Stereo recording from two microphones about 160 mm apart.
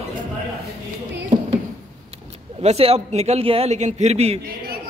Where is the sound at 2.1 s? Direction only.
40° right (ahead or behind).